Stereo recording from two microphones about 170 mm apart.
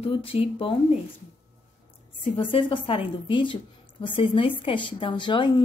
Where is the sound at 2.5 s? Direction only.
30° left (ahead or behind).